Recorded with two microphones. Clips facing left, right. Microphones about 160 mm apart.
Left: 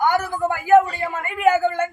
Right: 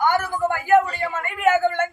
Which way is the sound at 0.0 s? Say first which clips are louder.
Left 1 dB; 15° left (ahead or behind).